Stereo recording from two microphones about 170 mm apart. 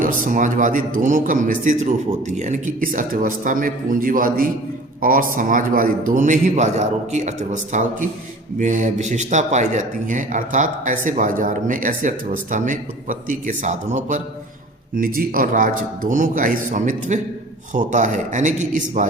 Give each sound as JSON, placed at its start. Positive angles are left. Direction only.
{"t": 0.0, "sound": "speech", "side_deg": -50}